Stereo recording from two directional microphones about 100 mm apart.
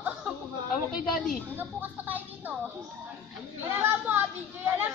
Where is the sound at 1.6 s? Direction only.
20° right (ahead or behind).